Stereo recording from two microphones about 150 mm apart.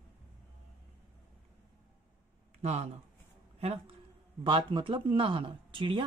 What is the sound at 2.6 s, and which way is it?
A woman's voice, 45° right (ahead or behind).